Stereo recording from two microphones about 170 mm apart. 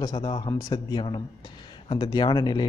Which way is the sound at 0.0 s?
25° left (ahead or behind).